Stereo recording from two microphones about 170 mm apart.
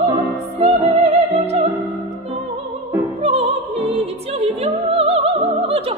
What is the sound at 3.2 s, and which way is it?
Music, 35° right (ahead or behind).